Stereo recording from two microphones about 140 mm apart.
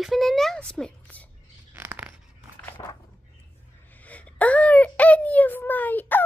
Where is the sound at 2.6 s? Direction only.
15° left (ahead or behind).